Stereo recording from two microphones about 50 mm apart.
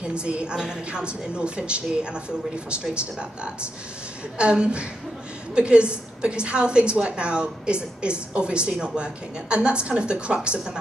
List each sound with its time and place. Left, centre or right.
0.0 s a woman's voice: right
4.4 s a woman's voice: right